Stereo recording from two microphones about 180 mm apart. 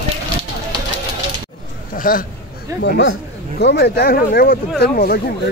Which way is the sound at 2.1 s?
50° left (ahead or behind).